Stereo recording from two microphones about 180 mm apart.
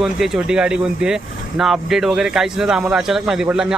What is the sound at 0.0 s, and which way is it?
Speech, centre (ahead or behind).